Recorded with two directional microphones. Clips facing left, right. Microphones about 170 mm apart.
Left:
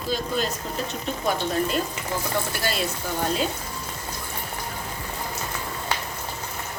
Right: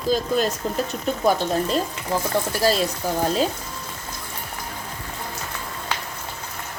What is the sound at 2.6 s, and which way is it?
Speech, 35° right (ahead or behind).